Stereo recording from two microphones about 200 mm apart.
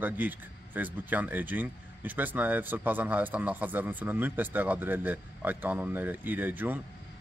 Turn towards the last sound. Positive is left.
turn(degrees=-10)  # may be behind; listen again after turning